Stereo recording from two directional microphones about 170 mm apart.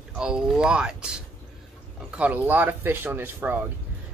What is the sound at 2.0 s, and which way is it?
Speech, 10° right (ahead or behind).